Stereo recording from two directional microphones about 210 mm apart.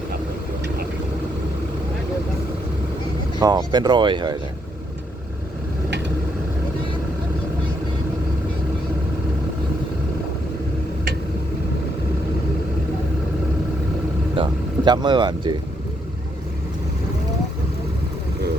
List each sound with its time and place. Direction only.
3.4 s speech: 20° right (ahead or behind)
14.3 s speech: 20° right (ahead or behind)